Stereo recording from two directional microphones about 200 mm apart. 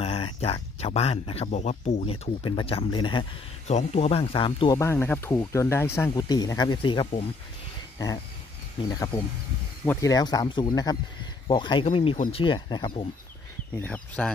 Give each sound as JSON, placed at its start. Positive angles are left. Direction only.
{"t": 0.0, "sound": "speech", "side_deg": 30}
{"t": 4.7, "sound": "speech", "side_deg": 10}
{"t": 8.8, "sound": "speech", "side_deg": 15}
{"t": 13.7, "sound": "speech", "side_deg": 5}